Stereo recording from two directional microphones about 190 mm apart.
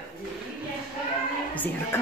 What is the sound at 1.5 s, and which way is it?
Speech, 10° left (ahead or behind).